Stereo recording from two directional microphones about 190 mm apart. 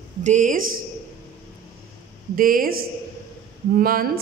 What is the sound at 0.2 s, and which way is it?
Speech, 40° right (ahead or behind).